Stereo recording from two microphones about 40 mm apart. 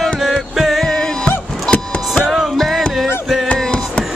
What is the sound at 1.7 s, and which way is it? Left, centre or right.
Vehicle, centre.